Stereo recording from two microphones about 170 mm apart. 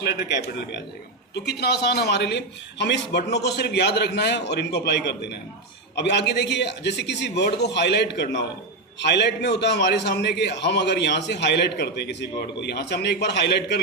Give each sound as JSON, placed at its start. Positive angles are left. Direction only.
{"t": 0.0, "sound": "a man's voice", "side_deg": 75}
{"t": 1.5, "sound": "a man's voice", "side_deg": 75}